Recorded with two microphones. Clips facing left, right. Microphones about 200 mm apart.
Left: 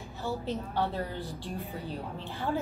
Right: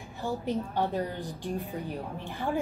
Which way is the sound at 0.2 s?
15° right (ahead or behind).